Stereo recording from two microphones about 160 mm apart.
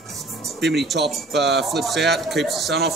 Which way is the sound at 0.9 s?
90° right.